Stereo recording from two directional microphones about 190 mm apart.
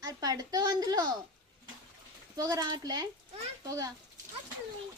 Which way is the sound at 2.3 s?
20° right (ahead or behind).